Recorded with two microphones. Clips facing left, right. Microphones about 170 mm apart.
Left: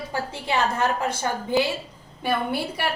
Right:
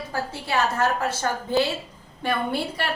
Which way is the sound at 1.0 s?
15° left (ahead or behind).